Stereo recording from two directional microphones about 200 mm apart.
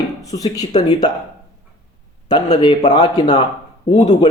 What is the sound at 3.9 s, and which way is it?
Speech, 35° left (ahead or behind).